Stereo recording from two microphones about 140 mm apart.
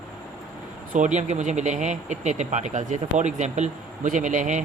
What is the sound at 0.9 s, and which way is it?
Speech, 60° right (ahead or behind).